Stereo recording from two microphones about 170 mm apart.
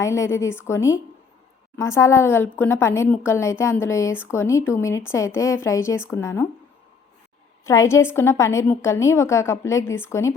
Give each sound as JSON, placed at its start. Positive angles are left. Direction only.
{"t": 0.0, "sound": "a woman's voice", "side_deg": 15}
{"t": 7.6, "sound": "a woman's voice", "side_deg": 20}